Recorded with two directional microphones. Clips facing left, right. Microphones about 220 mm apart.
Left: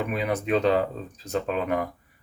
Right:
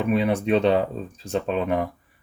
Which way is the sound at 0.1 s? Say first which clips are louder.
Right 7 dB; 30° right (ahead or behind).